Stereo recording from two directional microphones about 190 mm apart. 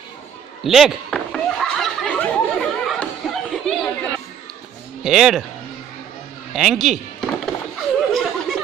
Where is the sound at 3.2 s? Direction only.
Centre (ahead or behind).